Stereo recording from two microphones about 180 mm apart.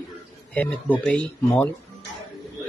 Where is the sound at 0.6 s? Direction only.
10° left (ahead or behind).